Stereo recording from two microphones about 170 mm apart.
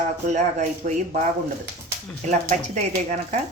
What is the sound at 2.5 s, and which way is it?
Speech, 45° right (ahead or behind).